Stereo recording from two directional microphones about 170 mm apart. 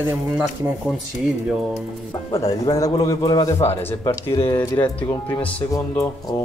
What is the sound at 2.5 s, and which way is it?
A man's voice, 20° left (ahead or behind).